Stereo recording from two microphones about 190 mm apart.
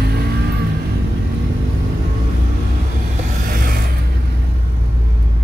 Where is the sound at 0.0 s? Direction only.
55° right (ahead or behind).